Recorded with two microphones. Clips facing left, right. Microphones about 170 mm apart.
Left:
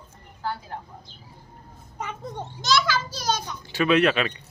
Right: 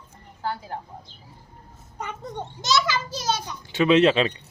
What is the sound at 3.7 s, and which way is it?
Speech, 25° right (ahead or behind).